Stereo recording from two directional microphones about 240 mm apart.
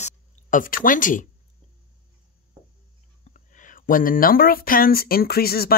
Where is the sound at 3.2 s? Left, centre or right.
Left.